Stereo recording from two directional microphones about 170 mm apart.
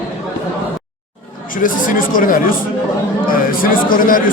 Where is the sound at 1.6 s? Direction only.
55° left (ahead or behind).